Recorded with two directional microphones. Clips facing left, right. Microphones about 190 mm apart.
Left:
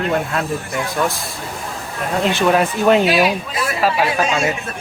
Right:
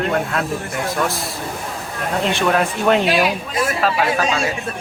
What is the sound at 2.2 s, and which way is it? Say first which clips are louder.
Speech: left 3 dB; 5° left (ahead or behind).